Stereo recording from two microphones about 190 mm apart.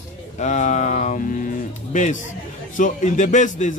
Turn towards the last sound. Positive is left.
turn(degrees=40)  # may be behind; listen again after turning